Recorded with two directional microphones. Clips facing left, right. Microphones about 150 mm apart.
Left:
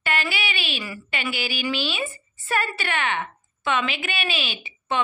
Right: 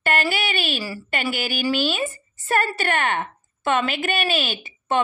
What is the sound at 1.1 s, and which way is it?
A woman's voice, 45° right (ahead or behind).